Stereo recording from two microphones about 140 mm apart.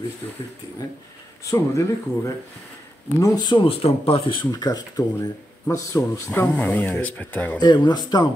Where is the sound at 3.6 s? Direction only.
40° left (ahead or behind).